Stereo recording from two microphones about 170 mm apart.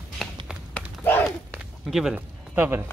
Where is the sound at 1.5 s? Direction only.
5° right (ahead or behind).